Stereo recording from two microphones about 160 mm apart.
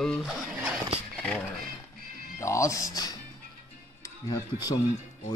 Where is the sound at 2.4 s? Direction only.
20° left (ahead or behind).